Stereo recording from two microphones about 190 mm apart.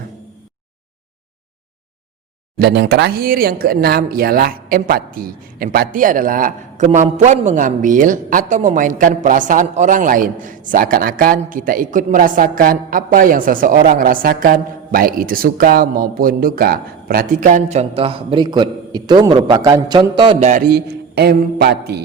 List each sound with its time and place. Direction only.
2.6 s speech: 60° right (ahead or behind); by 20.5 s 30° right (ahead or behind)
20.5 s a man's voice: 50° right (ahead or behind)